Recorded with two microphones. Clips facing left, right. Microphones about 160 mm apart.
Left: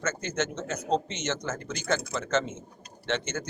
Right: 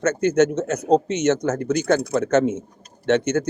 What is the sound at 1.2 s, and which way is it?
Speech, 60° right (ahead or behind).